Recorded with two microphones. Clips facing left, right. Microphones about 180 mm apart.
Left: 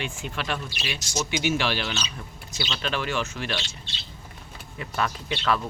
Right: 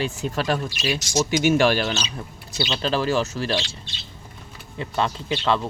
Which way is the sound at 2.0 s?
35° right (ahead or behind).